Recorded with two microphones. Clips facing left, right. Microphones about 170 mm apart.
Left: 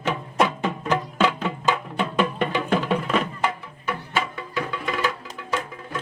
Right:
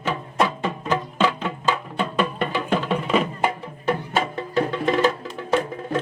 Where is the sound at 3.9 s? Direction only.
35° right (ahead or behind).